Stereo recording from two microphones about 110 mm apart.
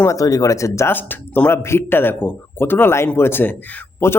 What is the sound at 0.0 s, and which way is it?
A man's voice, 30° left (ahead or behind).